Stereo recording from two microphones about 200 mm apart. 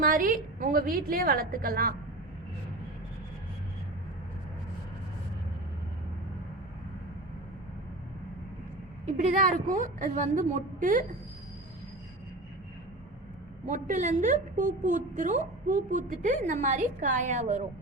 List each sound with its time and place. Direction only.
0.0 s a woman's voice: 45° right (ahead or behind)
9.0 s a woman's voice: 40° right (ahead or behind)
13.7 s a woman's voice: 40° right (ahead or behind)